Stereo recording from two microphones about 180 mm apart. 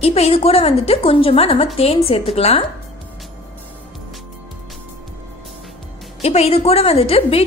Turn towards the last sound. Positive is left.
turn(degrees=35)  # may be behind; listen again after turning